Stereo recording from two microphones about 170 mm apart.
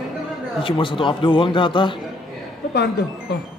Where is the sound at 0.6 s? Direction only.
30° left (ahead or behind).